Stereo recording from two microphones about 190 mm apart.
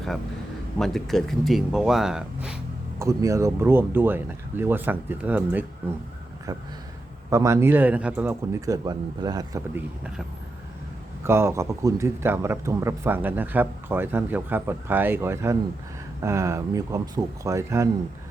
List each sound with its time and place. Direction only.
0.8 s speech: centre (ahead or behind)
3.0 s speech: 15° right (ahead or behind)
7.3 s speech: 15° right (ahead or behind)
11.2 s speech: 15° right (ahead or behind)